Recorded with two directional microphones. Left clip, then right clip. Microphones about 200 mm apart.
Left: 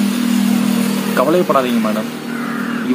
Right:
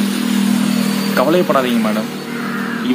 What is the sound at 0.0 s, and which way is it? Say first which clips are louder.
Vehicle: left 1 dB; 60° left (ahead or behind).